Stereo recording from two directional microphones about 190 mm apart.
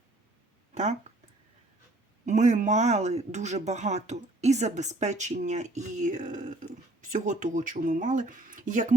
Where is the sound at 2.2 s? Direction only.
40° right (ahead or behind).